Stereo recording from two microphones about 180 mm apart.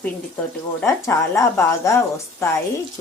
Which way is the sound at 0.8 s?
15° left (ahead or behind).